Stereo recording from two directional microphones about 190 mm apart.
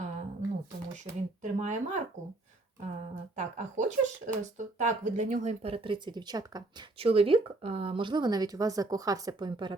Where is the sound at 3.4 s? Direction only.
40° right (ahead or behind).